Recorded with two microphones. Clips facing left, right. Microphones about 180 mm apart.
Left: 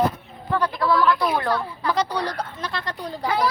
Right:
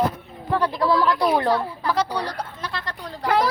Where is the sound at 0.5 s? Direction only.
30° right (ahead or behind).